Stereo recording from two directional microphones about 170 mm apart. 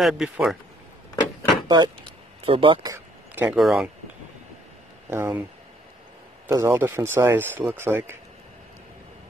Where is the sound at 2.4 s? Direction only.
30° right (ahead or behind).